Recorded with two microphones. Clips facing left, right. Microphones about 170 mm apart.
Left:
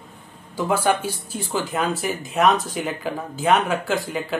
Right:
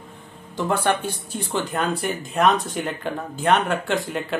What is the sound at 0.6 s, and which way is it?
Speech, 5° left (ahead or behind).